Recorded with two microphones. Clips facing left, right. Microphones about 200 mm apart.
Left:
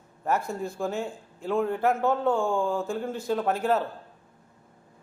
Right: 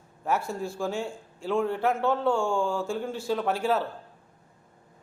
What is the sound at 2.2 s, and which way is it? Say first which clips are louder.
Speech: left 1 dB; 20° left (ahead or behind).